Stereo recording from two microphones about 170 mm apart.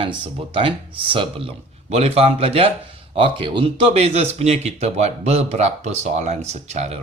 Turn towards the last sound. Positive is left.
turn(degrees=-40)  # may be behind; listen again after turning